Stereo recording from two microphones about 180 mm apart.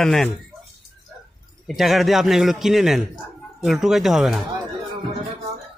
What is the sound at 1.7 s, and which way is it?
A man's voice, centre (ahead or behind).